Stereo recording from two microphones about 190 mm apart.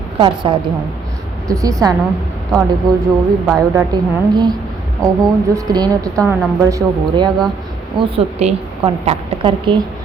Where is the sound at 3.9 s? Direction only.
20° right (ahead or behind).